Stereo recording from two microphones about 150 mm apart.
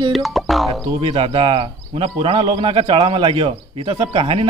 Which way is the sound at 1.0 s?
35° right (ahead or behind).